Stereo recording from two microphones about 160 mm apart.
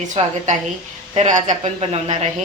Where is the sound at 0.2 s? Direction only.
40° right (ahead or behind).